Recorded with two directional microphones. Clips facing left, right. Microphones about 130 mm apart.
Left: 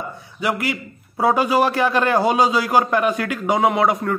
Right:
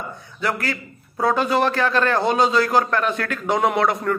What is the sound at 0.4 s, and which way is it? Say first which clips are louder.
A man's voice: left 2 dB; 15° left (ahead or behind).